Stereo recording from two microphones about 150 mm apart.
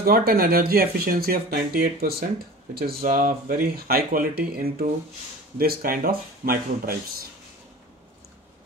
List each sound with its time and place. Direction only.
0.0 s speech: 80° right